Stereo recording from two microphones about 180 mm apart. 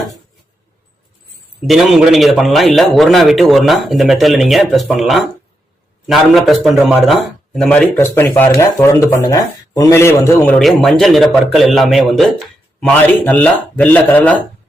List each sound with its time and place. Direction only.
1.6 s a man's voice: centre (ahead or behind); by 10.5 s 15° left (ahead or behind)
10.5 s a man's voice: centre (ahead or behind)